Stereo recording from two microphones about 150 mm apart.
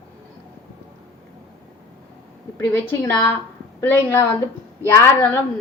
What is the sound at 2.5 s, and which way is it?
A woman's voice, 15° left (ahead or behind).